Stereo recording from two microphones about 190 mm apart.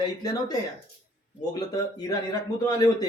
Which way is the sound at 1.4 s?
20° left (ahead or behind).